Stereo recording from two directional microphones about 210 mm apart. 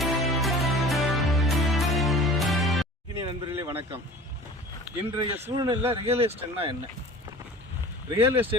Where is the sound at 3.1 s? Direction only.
15° right (ahead or behind).